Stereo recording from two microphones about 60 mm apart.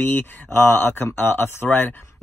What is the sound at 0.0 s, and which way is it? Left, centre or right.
Speech, left.